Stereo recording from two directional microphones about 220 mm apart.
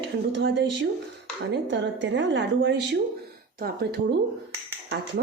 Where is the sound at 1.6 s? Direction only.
55° right (ahead or behind).